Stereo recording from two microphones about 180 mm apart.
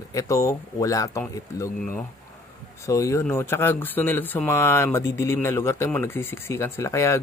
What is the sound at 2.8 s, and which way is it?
Speech, 15° left (ahead or behind).